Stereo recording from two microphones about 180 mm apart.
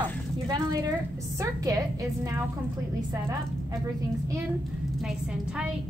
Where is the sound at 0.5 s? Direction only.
20° right (ahead or behind).